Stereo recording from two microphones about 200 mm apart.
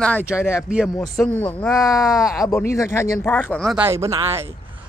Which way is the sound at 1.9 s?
20° left (ahead or behind).